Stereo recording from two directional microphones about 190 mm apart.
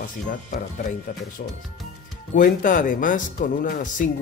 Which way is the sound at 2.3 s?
45° left (ahead or behind).